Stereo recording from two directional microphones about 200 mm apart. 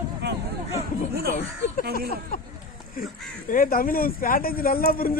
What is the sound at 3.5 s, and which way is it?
Speech, 45° left (ahead or behind).